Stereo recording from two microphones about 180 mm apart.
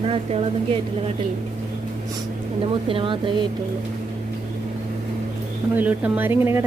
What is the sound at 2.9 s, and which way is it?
Speech, 30° right (ahead or behind).